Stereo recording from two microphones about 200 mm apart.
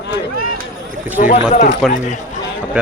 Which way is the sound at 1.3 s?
30° left (ahead or behind).